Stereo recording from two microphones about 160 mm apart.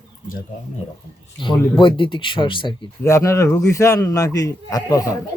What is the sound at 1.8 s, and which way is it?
Speech, 30° left (ahead or behind).